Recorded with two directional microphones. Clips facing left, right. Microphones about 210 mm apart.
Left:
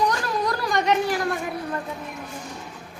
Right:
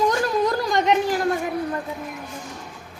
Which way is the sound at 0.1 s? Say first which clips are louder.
Right 4 dB; 20° right (ahead or behind).